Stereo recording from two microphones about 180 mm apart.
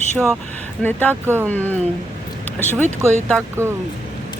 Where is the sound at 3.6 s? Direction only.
15° right (ahead or behind).